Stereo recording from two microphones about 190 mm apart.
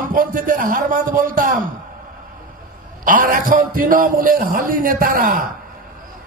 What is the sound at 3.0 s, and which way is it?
A man's voice, 45° right (ahead or behind).